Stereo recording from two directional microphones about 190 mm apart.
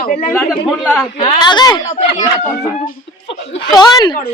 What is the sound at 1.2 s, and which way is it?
Speech, 25° left (ahead or behind).